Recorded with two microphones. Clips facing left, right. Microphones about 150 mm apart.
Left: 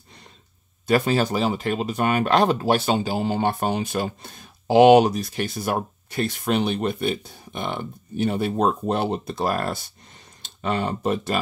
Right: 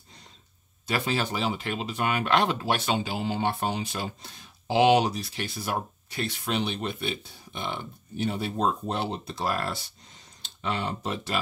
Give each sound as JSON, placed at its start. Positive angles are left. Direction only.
{"t": 0.8, "sound": "speech", "side_deg": 45}